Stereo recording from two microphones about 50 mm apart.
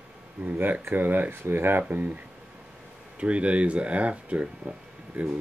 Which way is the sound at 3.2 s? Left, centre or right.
Right.